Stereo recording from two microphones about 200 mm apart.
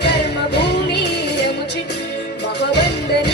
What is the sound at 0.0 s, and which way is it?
Music, 60° left (ahead or behind).